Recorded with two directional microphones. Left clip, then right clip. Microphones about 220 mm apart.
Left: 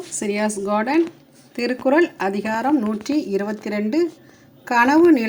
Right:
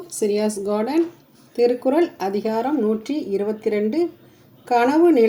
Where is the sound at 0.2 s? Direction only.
5° left (ahead or behind).